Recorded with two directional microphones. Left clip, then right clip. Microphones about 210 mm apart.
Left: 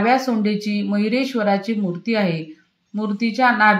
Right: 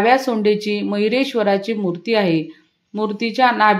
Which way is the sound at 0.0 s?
45° right (ahead or behind).